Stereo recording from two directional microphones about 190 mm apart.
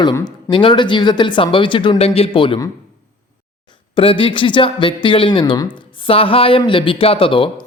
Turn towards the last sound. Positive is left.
turn(degrees=30)  # may be behind; listen again after turning